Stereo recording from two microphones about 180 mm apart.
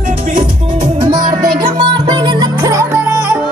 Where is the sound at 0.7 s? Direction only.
25° right (ahead or behind).